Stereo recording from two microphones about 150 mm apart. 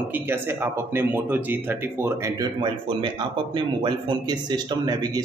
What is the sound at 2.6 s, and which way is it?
A man's voice, 30° right (ahead or behind).